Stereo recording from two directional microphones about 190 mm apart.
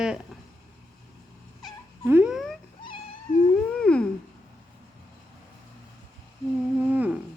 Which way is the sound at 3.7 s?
5° left (ahead or behind).